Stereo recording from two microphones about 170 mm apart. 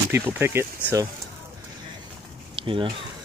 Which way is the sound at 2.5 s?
30° right (ahead or behind).